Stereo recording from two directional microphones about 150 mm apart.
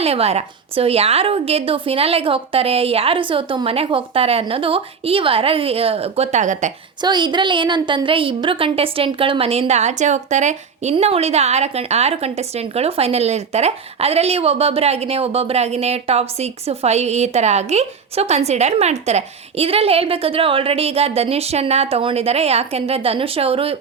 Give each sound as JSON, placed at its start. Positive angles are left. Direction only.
{"t": 0.0, "sound": "a woman's voice", "side_deg": -40}
{"t": 7.0, "sound": "a woman's voice", "side_deg": -30}